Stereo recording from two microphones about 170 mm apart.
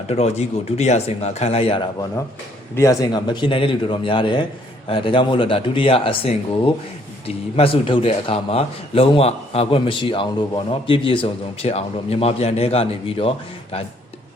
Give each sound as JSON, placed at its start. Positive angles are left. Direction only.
{"t": 0.1, "sound": "a man's voice", "side_deg": 40}
{"t": 2.7, "sound": "a man's voice", "side_deg": 20}